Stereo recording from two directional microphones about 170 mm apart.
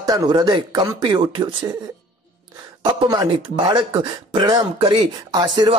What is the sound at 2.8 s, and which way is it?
Speech, 25° right (ahead or behind).